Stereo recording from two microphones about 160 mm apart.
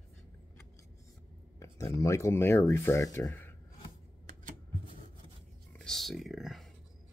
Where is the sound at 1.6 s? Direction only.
20° left (ahead or behind).